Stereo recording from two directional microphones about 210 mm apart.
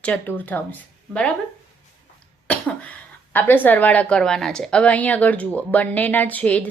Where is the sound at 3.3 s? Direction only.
10° left (ahead or behind).